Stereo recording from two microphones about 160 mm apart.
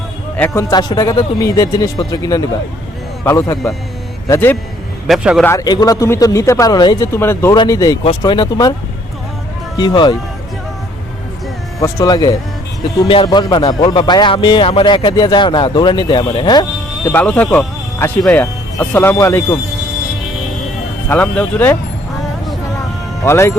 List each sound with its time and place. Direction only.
0.3 s a man's voice: 10° left (ahead or behind)
0.7 s speech: 25° left (ahead or behind)
5.0 s speech: centre (ahead or behind)
5.4 s speech: 20° left (ahead or behind)
9.7 s speech: 25° left (ahead or behind)
11.8 s speech: 25° left (ahead or behind)
17.1 s speech: 10° left (ahead or behind)
21.1 s speech: 10° left (ahead or behind)
23.2 s speech: 15° left (ahead or behind)